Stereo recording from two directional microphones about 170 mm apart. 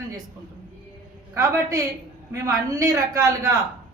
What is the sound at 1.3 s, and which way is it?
A woman's voice, 20° right (ahead or behind).